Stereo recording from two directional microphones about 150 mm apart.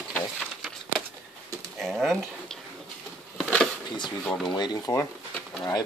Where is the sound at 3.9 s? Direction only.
30° left (ahead or behind).